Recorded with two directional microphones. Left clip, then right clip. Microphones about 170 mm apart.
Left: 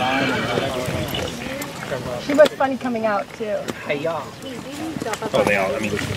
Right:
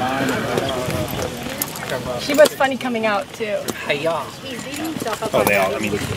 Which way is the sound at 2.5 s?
35° right (ahead or behind).